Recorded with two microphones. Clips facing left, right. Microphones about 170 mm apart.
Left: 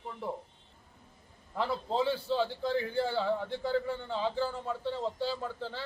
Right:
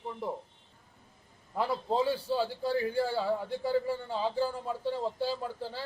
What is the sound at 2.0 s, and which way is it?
A man's voice, 10° right (ahead or behind).